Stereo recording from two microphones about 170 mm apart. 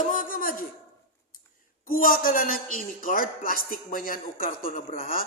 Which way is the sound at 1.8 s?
55° left (ahead or behind).